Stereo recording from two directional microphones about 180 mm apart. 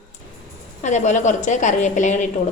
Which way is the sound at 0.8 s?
40° left (ahead or behind).